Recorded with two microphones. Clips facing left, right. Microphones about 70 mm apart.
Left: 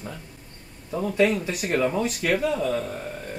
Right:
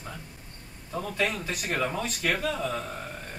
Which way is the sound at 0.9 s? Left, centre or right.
Centre.